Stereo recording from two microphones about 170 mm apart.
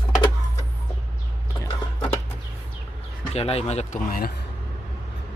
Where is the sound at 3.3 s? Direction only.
35° left (ahead or behind).